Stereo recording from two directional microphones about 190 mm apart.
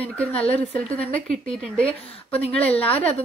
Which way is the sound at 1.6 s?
5° left (ahead or behind).